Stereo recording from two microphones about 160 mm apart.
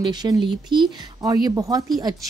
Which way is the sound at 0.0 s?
25° right (ahead or behind).